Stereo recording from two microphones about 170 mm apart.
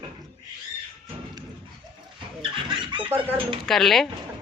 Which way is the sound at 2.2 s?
30° right (ahead or behind).